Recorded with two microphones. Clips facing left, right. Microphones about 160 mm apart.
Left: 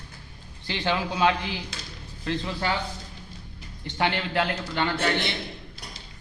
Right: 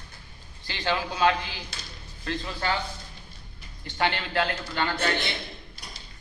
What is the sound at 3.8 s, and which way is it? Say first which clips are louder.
A man's voice: left 1 dB; 15° left (ahead or behind).